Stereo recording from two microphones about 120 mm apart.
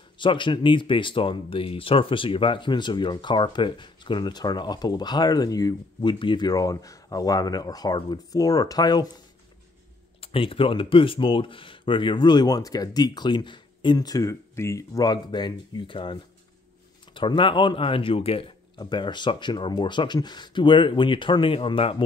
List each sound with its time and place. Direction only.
0.2 s speech: 40° left (ahead or behind)
6.1 s speech: 40° left (ahead or behind)
10.2 s speech: 50° left (ahead or behind)
18.8 s speech: 40° left (ahead or behind)